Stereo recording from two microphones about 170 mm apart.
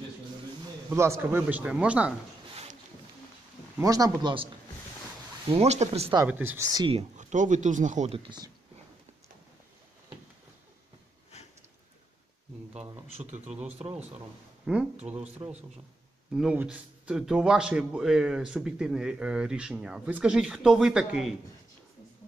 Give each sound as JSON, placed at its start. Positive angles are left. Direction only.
{"t": 0.8, "sound": "speech", "side_deg": -15}
{"t": 2.5, "sound": "a sound", "side_deg": -40}
{"t": 3.8, "sound": "speech", "side_deg": -20}
{"t": 5.5, "sound": "speech", "side_deg": -40}
{"t": 6.2, "sound": "speech", "side_deg": -10}
{"t": 8.1, "sound": "speech", "side_deg": -30}
{"t": 13.5, "sound": "speech", "side_deg": -10}
{"t": 16.3, "sound": "a man's voice", "side_deg": -5}